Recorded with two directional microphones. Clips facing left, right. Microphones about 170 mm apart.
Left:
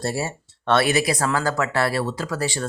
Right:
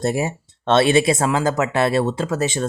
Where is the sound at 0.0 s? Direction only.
20° right (ahead or behind).